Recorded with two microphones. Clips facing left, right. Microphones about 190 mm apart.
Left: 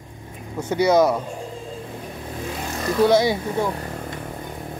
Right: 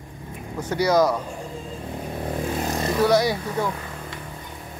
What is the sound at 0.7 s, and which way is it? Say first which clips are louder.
Speech: left 2 dB; 25° left (ahead or behind).